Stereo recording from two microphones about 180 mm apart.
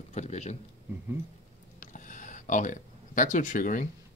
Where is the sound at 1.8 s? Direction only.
45° left (ahead or behind).